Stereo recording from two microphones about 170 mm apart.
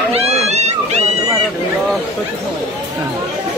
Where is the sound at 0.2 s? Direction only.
40° right (ahead or behind).